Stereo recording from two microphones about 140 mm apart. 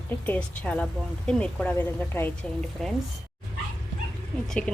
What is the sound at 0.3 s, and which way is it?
Speech, 10° left (ahead or behind).